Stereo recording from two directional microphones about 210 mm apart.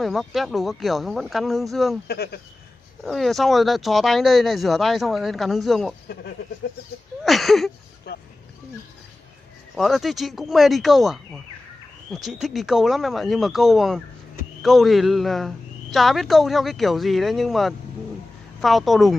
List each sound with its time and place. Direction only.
0.0 s a woman's voice: centre (ahead or behind)
2.0 s speech: 50° left (ahead or behind)
3.0 s a woman's voice: centre (ahead or behind)
7.2 s a sound: centre (ahead or behind)
9.8 s a woman's voice: centre (ahead or behind)